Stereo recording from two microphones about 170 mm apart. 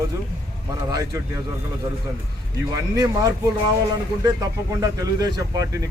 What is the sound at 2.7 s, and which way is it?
Speech, 20° right (ahead or behind).